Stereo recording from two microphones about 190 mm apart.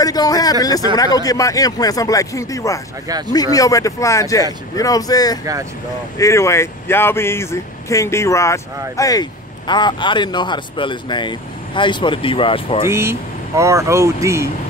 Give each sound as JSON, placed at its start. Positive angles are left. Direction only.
{"t": 0.0, "sound": "speech", "side_deg": 20}
{"t": 12.8, "sound": "speech", "side_deg": -15}